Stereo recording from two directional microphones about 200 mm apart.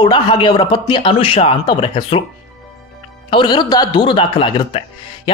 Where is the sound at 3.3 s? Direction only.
25° left (ahead or behind).